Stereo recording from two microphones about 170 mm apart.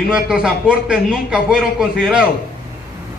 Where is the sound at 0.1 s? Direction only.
5° right (ahead or behind).